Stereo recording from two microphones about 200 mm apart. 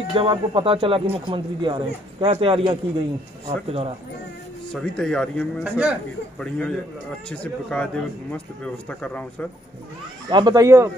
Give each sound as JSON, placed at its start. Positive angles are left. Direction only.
{"t": 0.1, "sound": "speech", "side_deg": -25}
{"t": 4.7, "sound": "speech", "side_deg": 5}
{"t": 10.3, "sound": "speech", "side_deg": -20}